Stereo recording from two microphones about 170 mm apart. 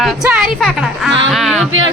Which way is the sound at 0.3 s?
5° right (ahead or behind).